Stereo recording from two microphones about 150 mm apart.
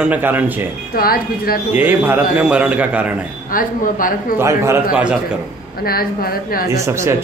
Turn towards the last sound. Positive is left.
turn(degrees=-20)  # may be behind; listen again after turning